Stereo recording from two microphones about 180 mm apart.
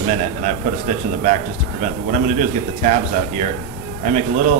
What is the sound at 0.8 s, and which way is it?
A man's voice, 45° right (ahead or behind).